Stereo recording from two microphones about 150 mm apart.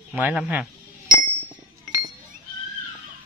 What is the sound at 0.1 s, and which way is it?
Speech, 5° right (ahead or behind).